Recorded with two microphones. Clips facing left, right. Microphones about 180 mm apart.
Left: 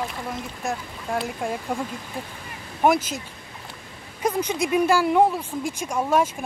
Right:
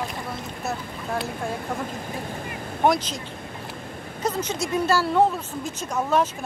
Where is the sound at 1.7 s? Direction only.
15° left (ahead or behind).